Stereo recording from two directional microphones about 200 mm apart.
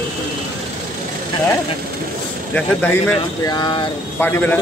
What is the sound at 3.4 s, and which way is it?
Speech, 20° left (ahead or behind).